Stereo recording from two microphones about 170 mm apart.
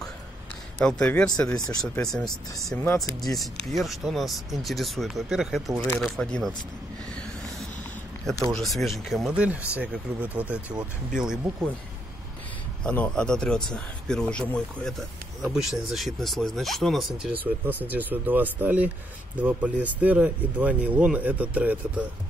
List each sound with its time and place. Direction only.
0.7 s speech: 5° left (ahead or behind)
8.5 s speech: centre (ahead or behind)
12.8 s speech: 5° left (ahead or behind); by 22.0 s 10° right (ahead or behind)